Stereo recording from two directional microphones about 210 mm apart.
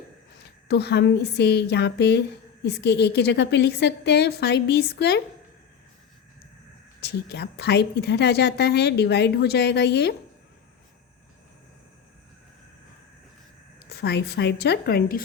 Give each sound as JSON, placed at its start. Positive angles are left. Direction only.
{"t": 0.7, "sound": "a woman's voice", "side_deg": 50}
{"t": 7.0, "sound": "a woman's voice", "side_deg": 50}
{"t": 13.9, "sound": "a woman's voice", "side_deg": 50}